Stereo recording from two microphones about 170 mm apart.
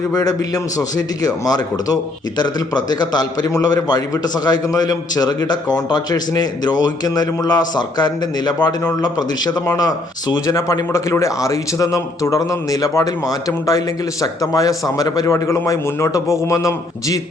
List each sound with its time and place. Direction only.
0.1 s a man's voice: 20° left (ahead or behind)